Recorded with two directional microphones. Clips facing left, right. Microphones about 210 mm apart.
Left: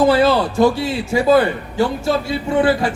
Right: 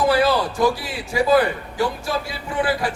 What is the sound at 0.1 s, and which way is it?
A man's voice, 25° left (ahead or behind).